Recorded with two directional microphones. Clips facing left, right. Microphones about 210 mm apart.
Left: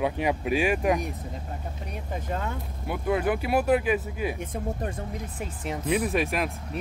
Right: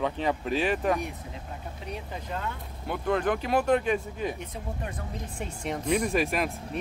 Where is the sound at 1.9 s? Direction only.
50° left (ahead or behind).